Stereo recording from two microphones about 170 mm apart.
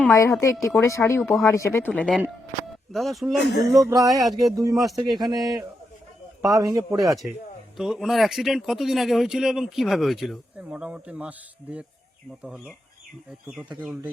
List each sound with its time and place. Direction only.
0.1 s speech: 15° left (ahead or behind)
1.2 s speech: centre (ahead or behind)
1.5 s speech: 15° left (ahead or behind); by 3.5 s centre (ahead or behind)
3.7 s a man's voice: 20° right (ahead or behind)
4.8 s speech: centre (ahead or behind)
6.5 s a man's voice: 20° right (ahead or behind)
7.8 s speech: centre (ahead or behind)